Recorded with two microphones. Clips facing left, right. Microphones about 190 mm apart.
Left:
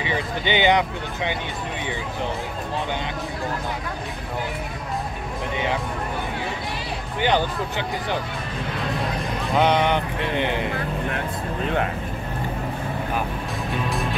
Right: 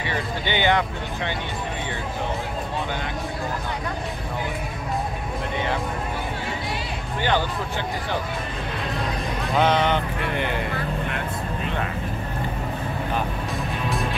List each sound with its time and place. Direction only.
0.0 s speech: 15° left (ahead or behind)
7.2 s speech: 15° left (ahead or behind)
9.6 s speech: 15° left (ahead or behind)